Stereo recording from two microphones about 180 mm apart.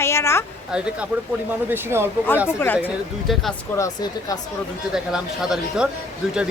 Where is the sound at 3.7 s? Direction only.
20° left (ahead or behind).